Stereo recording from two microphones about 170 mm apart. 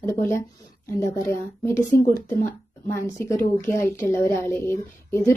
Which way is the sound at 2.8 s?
15° left (ahead or behind).